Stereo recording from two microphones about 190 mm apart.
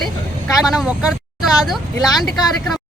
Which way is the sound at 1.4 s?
Centre (ahead or behind).